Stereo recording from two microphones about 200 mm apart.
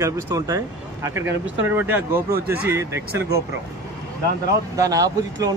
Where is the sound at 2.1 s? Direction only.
50° right (ahead or behind).